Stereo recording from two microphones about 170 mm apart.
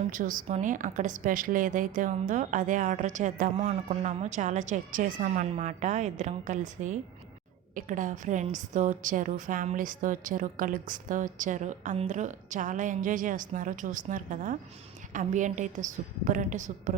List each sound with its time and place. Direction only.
0.1 s a woman's voice: 50° right (ahead or behind)